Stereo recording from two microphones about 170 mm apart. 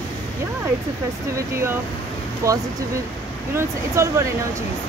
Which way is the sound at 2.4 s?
20° right (ahead or behind).